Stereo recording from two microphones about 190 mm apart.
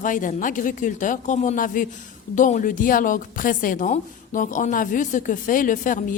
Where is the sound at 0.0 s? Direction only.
45° left (ahead or behind).